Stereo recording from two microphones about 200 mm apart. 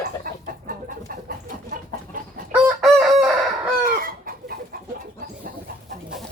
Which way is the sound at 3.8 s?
45° right (ahead or behind).